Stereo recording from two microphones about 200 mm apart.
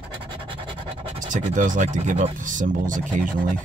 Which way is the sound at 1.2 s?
40° right (ahead or behind).